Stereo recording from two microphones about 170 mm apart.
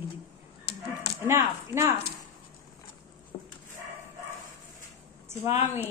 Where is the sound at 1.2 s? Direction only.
15° right (ahead or behind).